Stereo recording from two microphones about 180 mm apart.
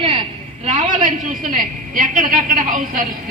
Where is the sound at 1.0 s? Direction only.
45° right (ahead or behind).